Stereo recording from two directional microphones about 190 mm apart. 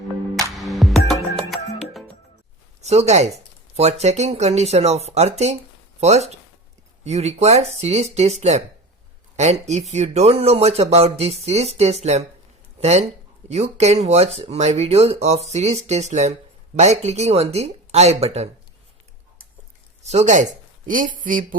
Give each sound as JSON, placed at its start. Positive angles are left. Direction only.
{"t": 0.5, "sound": "music", "side_deg": 0}
{"t": 2.8, "sound": "speech", "side_deg": -35}
{"t": 20.0, "sound": "speech", "side_deg": -35}